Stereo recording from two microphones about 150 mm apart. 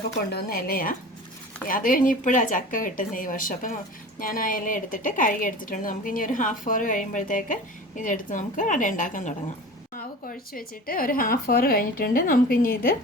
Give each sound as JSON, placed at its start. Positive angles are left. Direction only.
{"t": 0.3, "sound": "speech", "side_deg": 90}
{"t": 1.6, "sound": "a woman's voice", "side_deg": 65}
{"t": 10.0, "sound": "speech", "side_deg": 80}